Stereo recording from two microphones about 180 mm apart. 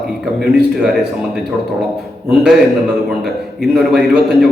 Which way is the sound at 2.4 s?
Centre (ahead or behind).